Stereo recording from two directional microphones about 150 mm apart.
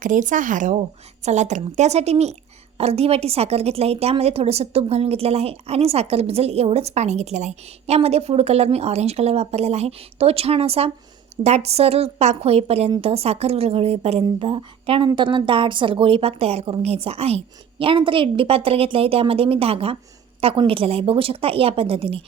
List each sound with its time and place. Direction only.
0.0 s a woman's voice: 60° right (ahead or behind); by 22.2 s 40° right (ahead or behind)